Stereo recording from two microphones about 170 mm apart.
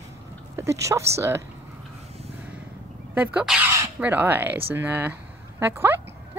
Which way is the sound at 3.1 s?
10° right (ahead or behind).